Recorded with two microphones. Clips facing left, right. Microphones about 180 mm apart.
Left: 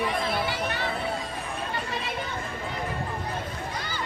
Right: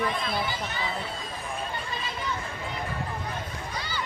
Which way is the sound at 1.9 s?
65° left (ahead or behind).